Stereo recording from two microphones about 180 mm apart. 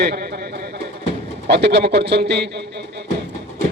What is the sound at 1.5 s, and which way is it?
A man's voice, 70° right (ahead or behind).